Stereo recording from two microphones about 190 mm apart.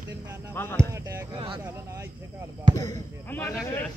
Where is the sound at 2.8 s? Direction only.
15° left (ahead or behind).